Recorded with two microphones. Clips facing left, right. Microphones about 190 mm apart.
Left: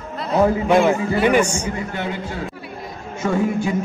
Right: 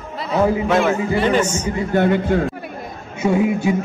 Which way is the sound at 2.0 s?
55° right (ahead or behind).